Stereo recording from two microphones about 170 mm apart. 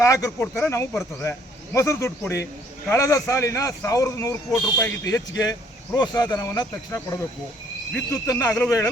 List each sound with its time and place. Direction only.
0.0 s speech: 20° left (ahead or behind)